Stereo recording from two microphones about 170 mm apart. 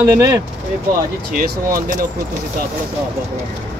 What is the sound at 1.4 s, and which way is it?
Speech, 55° right (ahead or behind).